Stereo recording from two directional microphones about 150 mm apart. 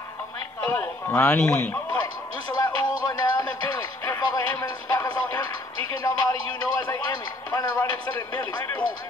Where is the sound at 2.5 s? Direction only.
25° left (ahead or behind).